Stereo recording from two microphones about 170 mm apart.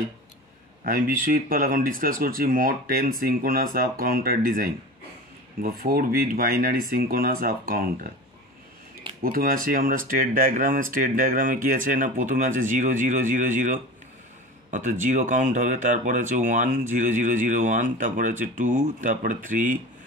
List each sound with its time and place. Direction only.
0.8 s speech: 55° right (ahead or behind)
9.2 s speech: 55° right (ahead or behind)